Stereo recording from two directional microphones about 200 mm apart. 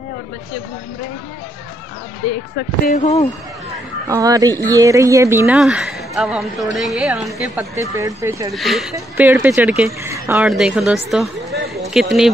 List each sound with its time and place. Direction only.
2.8 s speech: 45° left (ahead or behind)
4.1 s speech: 15° right (ahead or behind)
5.6 s a woman's voice: centre (ahead or behind)
7.9 s speech: 15° right (ahead or behind)
8.5 s a woman's voice: centre (ahead or behind)